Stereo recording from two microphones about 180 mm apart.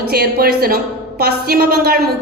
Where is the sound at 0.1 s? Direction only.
60° right (ahead or behind).